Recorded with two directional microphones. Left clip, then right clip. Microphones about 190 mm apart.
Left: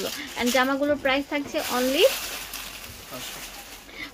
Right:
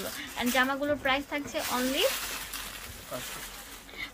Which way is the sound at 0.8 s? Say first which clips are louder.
Left 5 dB; 45° left (ahead or behind).